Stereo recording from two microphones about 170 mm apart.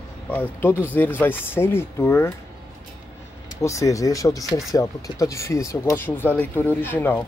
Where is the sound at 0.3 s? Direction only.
10° left (ahead or behind).